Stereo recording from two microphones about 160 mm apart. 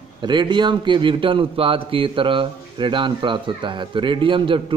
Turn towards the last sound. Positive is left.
turn(degrees=-30)  # may be behind; listen again after turning